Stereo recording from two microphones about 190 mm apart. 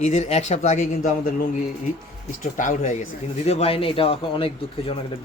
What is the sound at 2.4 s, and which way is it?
Speech, 40° left (ahead or behind).